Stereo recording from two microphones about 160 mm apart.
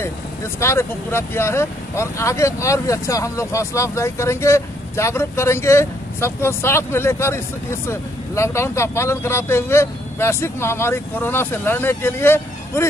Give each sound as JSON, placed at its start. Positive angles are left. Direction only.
{"t": 0.6, "sound": "speech", "side_deg": 15}